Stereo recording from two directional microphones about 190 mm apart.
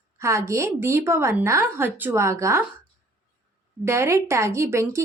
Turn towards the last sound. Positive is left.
turn(degrees=-15)  # may be behind; listen again after turning